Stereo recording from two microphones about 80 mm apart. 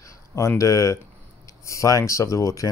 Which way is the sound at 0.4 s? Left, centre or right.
Left.